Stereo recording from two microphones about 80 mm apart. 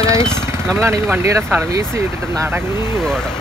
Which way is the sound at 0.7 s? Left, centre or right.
Right.